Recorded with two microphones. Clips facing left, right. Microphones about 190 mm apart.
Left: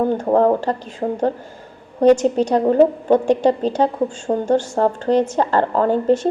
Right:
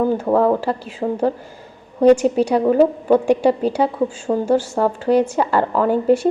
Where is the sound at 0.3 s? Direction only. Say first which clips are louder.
Left 1 dB; 20° left (ahead or behind).